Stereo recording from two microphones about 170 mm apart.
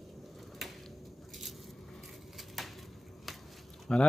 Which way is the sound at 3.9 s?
5° left (ahead or behind).